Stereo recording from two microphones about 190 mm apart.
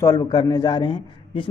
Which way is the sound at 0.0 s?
20° left (ahead or behind).